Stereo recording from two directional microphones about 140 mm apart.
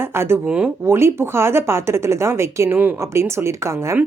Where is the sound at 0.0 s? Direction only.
15° right (ahead or behind).